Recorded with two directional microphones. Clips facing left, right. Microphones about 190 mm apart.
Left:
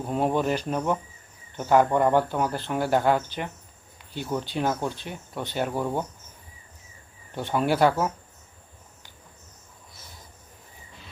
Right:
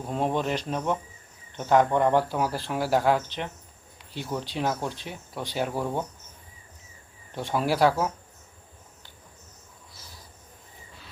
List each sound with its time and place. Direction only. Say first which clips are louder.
0.1 s speech: left 2 dB; 5° left (ahead or behind)
7.3 s speech: left 2 dB; centre (ahead or behind)